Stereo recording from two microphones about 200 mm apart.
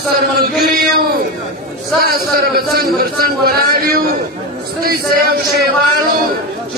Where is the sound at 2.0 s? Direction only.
50° right (ahead or behind).